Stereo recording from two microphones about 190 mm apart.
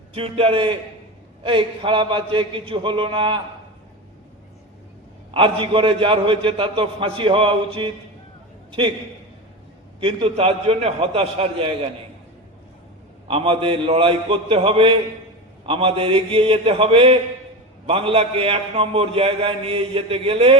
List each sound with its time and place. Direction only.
0.1 s a man's voice: 30° right (ahead or behind)
5.3 s a man's voice: 30° right (ahead or behind)
10.0 s a man's voice: 25° right (ahead or behind)
13.2 s a man's voice: 30° right (ahead or behind)